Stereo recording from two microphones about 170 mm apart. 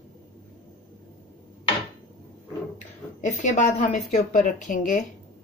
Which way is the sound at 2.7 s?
45° left (ahead or behind).